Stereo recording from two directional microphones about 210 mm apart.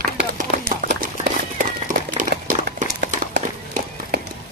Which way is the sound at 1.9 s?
40° right (ahead or behind).